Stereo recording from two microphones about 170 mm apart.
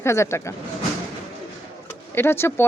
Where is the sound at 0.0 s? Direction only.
15° left (ahead or behind).